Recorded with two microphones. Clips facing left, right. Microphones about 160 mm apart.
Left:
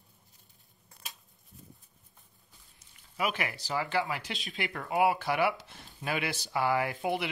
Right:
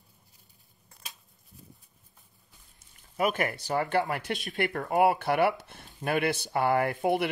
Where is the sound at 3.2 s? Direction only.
50° right (ahead or behind).